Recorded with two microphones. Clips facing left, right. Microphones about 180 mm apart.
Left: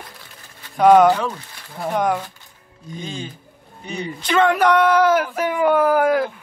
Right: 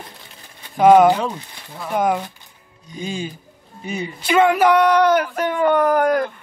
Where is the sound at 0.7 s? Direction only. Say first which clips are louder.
Right 1 dB; centre (ahead or behind).